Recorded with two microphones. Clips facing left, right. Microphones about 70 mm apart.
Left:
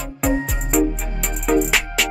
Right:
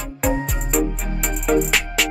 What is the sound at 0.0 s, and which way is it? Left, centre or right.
Music, centre.